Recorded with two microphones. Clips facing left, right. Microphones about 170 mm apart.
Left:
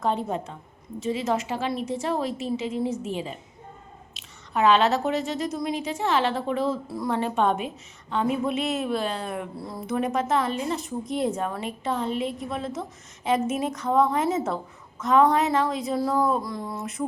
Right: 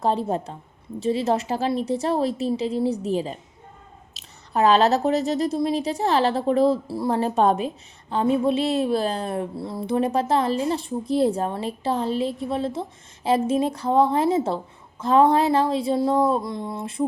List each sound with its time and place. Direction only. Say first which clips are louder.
0.0 s a woman's voice: right 3 dB; 35° right (ahead or behind)